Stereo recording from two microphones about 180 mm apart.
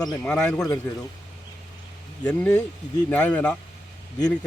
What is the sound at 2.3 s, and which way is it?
Speech, 5° left (ahead or behind).